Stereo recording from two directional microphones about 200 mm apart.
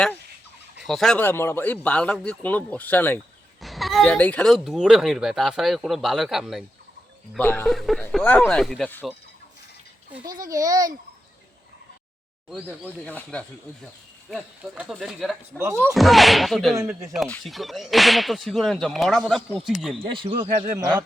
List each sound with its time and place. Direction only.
0.8 s speech: centre (ahead or behind)
10.4 s a child's voice: 15° right (ahead or behind)
12.5 s speech: 5° right (ahead or behind)
12.8 s speech: 10° left (ahead or behind)
14.3 s speech: 5° right (ahead or behind)
20.1 s speech: 25° right (ahead or behind)